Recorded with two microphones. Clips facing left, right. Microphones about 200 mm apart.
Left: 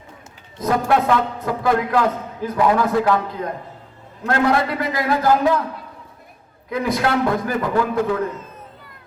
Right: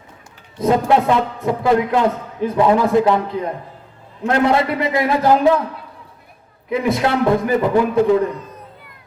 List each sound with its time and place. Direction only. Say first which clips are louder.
0.6 s a man's voice: right 3 dB; 25° right (ahead or behind)
4.3 s a man's voice: right 2 dB; 20° right (ahead or behind)
6.7 s a man's voice: right 3 dB; 25° right (ahead or behind)